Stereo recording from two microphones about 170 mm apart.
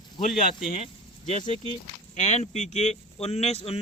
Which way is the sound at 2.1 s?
40° left (ahead or behind).